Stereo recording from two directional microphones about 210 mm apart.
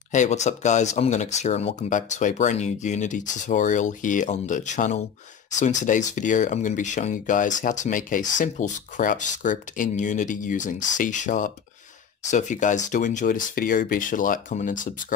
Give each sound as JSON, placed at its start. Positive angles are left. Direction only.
{"t": 0.1, "sound": "speech", "side_deg": 35}